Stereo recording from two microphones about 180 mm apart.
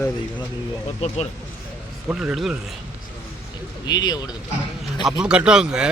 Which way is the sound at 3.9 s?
25° left (ahead or behind).